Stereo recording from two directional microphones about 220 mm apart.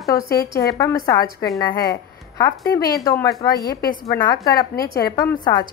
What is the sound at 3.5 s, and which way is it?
Speech, 45° left (ahead or behind).